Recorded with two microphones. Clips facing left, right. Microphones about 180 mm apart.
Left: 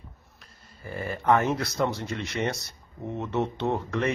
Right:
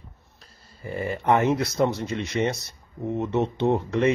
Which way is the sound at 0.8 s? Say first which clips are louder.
Right 1 dB; 20° right (ahead or behind).